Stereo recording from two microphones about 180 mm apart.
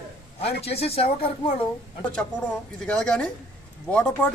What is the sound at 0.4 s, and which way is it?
Speech, 35° left (ahead or behind).